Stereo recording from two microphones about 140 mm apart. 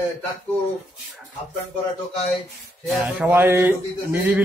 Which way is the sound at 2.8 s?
10° right (ahead or behind).